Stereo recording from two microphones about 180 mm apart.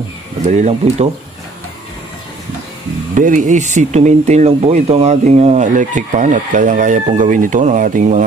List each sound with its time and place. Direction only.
0.5 s speech: 40° right (ahead or behind)
3.2 s speech: 45° right (ahead or behind)